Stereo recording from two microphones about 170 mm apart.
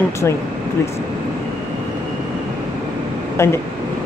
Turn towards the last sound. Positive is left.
turn(degrees=15)  # may be behind; listen again after turning